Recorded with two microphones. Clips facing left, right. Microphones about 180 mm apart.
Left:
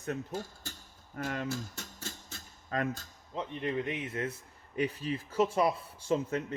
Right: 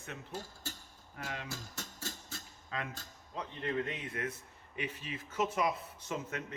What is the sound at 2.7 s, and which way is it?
Speech, 45° left (ahead or behind).